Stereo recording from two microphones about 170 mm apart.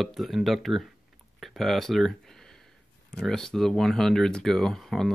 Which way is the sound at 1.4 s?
Centre (ahead or behind).